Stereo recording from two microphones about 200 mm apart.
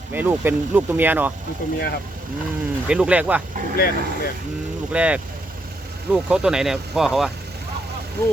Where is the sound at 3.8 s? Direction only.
50° left (ahead or behind).